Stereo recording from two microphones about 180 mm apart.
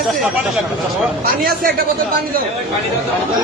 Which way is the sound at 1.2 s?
50° right (ahead or behind).